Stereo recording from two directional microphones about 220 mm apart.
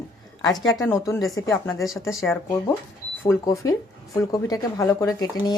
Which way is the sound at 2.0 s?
10° left (ahead or behind).